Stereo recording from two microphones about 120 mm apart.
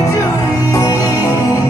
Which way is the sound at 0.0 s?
30° left (ahead or behind).